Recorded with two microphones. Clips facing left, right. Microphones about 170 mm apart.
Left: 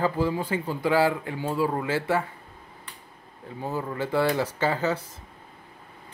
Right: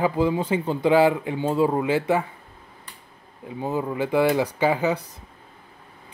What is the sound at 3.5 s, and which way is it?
A man's voice, 20° right (ahead or behind).